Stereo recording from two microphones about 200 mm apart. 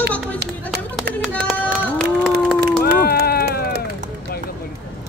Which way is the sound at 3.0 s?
50° left (ahead or behind).